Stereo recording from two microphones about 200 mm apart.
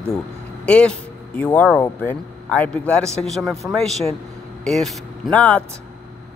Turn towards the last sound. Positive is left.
turn(degrees=5)  # may be behind; listen again after turning